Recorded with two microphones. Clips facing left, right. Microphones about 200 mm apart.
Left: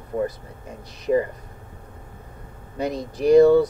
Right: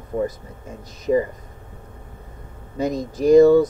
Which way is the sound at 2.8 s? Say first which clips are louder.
Right 2 dB; 45° right (ahead or behind).